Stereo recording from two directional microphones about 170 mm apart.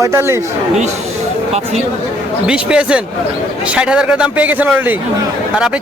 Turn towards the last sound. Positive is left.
turn(degrees=-10)  # may be behind; listen again after turning